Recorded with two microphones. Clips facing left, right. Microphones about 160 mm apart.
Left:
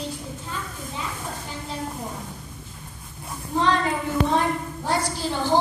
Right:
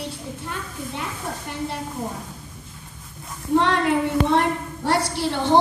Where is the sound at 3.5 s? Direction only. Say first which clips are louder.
Right 4 dB; 65° right (ahead or behind).